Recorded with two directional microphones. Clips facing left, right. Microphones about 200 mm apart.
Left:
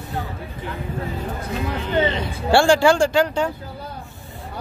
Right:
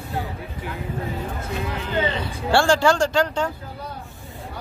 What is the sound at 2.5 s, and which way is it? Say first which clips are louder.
Speech: left 3 dB; 15° left (ahead or behind).